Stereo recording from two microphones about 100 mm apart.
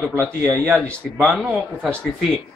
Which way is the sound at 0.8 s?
20° right (ahead or behind).